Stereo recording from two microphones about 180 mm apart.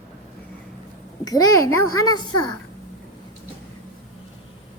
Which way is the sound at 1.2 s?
20° left (ahead or behind).